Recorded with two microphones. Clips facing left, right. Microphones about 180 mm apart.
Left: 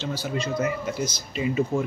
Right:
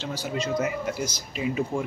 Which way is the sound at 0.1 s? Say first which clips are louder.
Right 2 dB; 15° right (ahead or behind).